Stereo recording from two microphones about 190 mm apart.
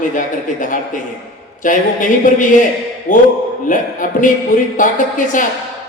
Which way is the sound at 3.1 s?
40° left (ahead or behind).